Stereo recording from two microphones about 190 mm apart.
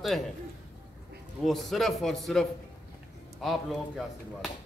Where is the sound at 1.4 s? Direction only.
Centre (ahead or behind).